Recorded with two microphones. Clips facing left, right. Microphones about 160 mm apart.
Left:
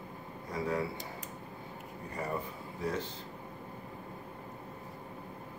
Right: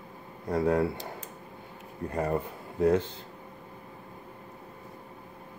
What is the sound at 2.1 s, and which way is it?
Speech, 70° right (ahead or behind).